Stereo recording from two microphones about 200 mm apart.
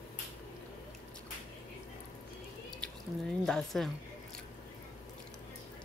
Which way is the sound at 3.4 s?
Centre (ahead or behind).